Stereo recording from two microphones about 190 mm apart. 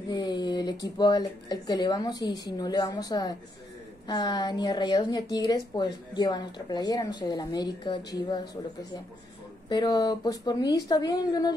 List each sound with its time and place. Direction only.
0.1 s a woman's voice: 20° left (ahead or behind)
9.7 s a woman's voice: 20° left (ahead or behind)